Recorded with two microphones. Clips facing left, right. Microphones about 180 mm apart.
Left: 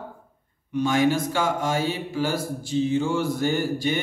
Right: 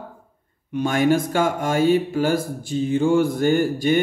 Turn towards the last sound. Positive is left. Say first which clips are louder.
# right 6 dB
turn(degrees=-50)  # may be behind; listen again after turning